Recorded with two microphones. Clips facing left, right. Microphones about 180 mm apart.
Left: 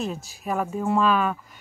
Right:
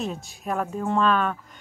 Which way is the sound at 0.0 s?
Centre (ahead or behind).